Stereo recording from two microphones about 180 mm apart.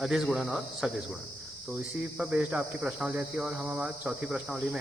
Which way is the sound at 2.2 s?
5° right (ahead or behind).